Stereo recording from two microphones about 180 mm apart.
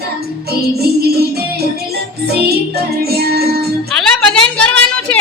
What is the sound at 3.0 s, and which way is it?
Music, 60° right (ahead or behind).